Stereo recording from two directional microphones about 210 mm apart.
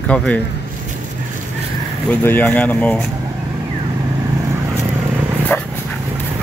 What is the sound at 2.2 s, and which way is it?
Speech, 10° left (ahead or behind).